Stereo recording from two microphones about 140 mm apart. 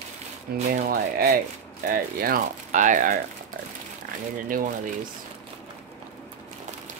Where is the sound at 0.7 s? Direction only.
90° right; by 3.2 s 65° right (ahead or behind).